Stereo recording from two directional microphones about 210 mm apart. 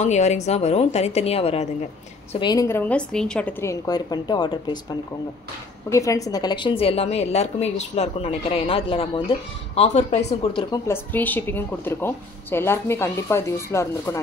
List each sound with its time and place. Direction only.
0.0 s a woman's voice: 35° left (ahead or behind)
2.4 s a woman's voice: 15° left (ahead or behind)
5.9 s a woman's voice: 15° left (ahead or behind); by 10.6 s 30° left (ahead or behind)
10.7 s a woman's voice: 10° left (ahead or behind)